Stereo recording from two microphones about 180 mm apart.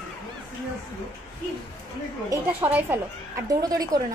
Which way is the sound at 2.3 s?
10° right (ahead or behind).